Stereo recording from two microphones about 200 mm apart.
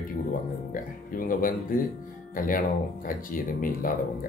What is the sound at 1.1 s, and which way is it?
Speech, 45° left (ahead or behind).